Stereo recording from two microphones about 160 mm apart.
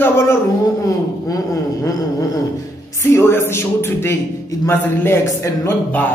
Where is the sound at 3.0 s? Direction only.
15° left (ahead or behind).